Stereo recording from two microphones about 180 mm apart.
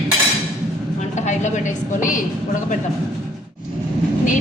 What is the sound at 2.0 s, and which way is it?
Speech, 45° left (ahead or behind).